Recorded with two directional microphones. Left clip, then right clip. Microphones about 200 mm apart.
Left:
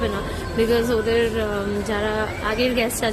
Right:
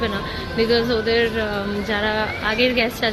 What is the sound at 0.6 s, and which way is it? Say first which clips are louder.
A woman's voice: right 1 dB; 15° left (ahead or behind).